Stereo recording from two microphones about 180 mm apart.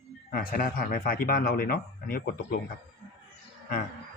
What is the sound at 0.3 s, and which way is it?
Speech, 55° left (ahead or behind).